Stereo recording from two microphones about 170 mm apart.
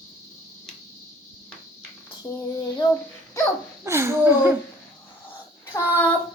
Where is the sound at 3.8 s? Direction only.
15° right (ahead or behind).